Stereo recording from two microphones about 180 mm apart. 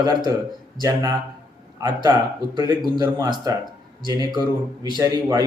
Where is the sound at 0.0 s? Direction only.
20° right (ahead or behind).